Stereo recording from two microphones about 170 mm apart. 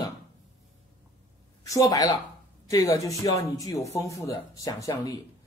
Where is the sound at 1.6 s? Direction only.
20° left (ahead or behind).